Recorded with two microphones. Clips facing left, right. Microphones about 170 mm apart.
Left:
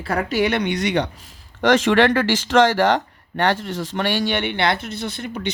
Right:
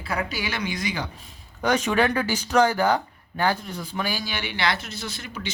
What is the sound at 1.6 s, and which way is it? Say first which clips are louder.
Speech: left 6 dB; 90° left.